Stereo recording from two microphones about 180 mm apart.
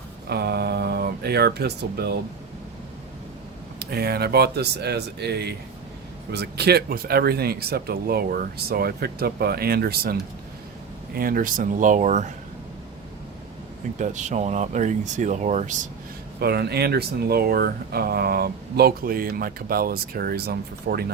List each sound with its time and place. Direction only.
0.3 s speech: 65° right (ahead or behind)
3.8 s speech: 60° right (ahead or behind); by 12.3 s 40° right (ahead or behind)
14.0 s speech: 40° right (ahead or behind)
16.4 s speech: 60° right (ahead or behind)